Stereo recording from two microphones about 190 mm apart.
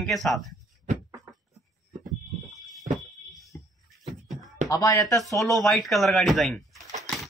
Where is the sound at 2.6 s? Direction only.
Centre (ahead or behind).